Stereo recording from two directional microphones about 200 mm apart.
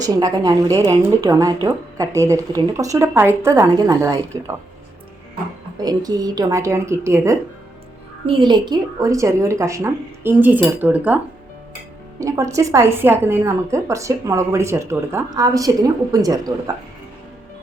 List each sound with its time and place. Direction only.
0.0 s speech: 20° right (ahead or behind)
5.8 s speech: 20° right (ahead or behind)
12.2 s speech: 15° right (ahead or behind)